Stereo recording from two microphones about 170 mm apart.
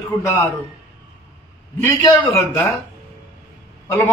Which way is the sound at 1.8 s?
15° left (ahead or behind).